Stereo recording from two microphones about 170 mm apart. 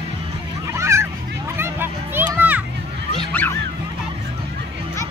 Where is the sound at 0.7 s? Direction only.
15° right (ahead or behind).